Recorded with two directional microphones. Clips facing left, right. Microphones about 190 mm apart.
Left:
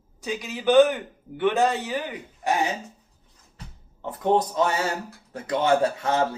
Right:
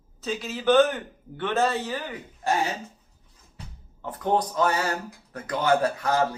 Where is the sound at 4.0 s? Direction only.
25° left (ahead or behind).